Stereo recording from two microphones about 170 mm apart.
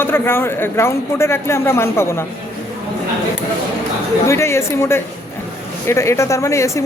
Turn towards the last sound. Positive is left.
turn(degrees=15)  # may be behind; listen again after turning